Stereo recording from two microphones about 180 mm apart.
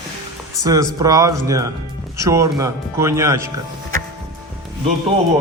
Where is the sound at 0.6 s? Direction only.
20° right (ahead or behind).